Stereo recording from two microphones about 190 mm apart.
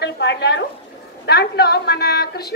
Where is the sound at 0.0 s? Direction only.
65° left (ahead or behind).